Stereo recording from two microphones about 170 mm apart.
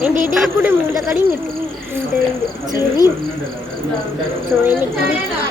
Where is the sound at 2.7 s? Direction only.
25° left (ahead or behind).